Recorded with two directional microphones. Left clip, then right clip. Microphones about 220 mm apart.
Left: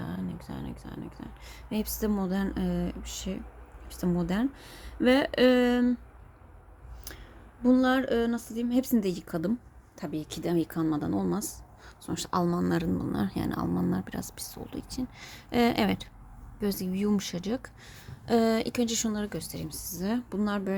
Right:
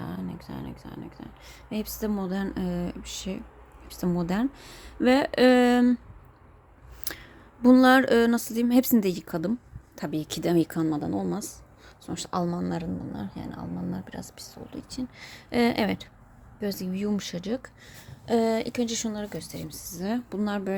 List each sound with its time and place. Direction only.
0.0 s a woman's voice: centre (ahead or behind); by 6.0 s 20° right (ahead or behind)
7.0 s a woman's voice: 25° right (ahead or behind); by 20.7 s 5° right (ahead or behind)